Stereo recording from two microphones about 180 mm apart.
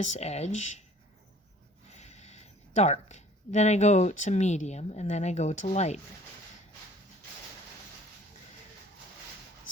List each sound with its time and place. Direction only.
0.0 s speech: 40° left (ahead or behind)
1.9 s speech: 40° left (ahead or behind)